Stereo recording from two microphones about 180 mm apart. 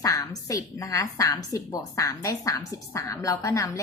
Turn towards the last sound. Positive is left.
turn(degrees=15)  # may be behind; listen again after turning